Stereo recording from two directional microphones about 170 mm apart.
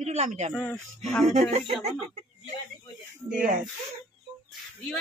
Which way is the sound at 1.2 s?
40° right (ahead or behind).